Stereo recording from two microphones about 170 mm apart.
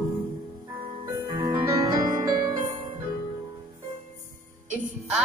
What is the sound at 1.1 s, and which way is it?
Music, 25° right (ahead or behind).